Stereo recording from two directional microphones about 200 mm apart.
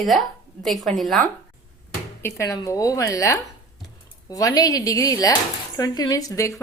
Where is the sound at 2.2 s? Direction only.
15° left (ahead or behind).